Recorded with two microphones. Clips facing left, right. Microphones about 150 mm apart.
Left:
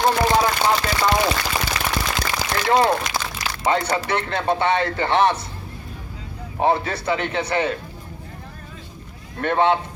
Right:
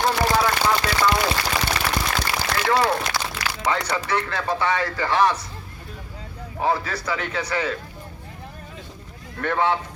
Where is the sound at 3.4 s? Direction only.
75° right (ahead or behind).